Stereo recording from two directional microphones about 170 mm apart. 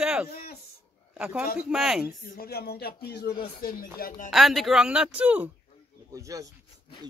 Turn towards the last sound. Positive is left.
turn(degrees=-20)  # may be behind; listen again after turning